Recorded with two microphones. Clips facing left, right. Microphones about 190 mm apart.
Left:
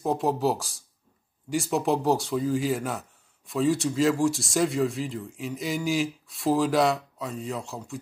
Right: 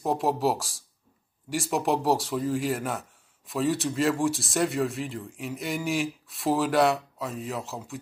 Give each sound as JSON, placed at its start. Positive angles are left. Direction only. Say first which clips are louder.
{"t": 0.0, "sound": "speech", "louder": "left 1 dB", "side_deg": 0}